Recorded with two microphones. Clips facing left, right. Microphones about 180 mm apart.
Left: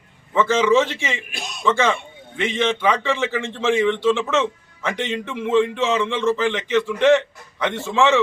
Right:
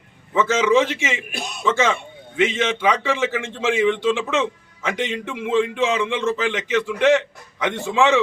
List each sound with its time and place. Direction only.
0.3 s a man's voice: 15° right (ahead or behind)
1.3 s a man's voice: 55° right (ahead or behind)
1.6 s a man's voice: 15° right (ahead or behind)